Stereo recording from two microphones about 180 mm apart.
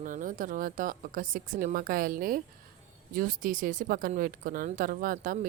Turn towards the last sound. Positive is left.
turn(degrees=-50)  # may be behind; listen again after turning